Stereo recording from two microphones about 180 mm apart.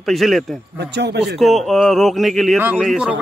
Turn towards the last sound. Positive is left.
turn(degrees=0)  # may be behind; listen again after turning